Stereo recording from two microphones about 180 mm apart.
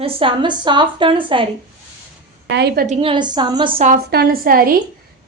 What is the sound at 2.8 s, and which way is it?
A woman's voice, 35° right (ahead or behind).